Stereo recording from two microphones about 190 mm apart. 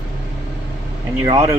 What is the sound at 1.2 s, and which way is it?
Speech, 20° right (ahead or behind).